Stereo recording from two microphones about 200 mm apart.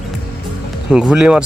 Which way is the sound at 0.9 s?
5° right (ahead or behind).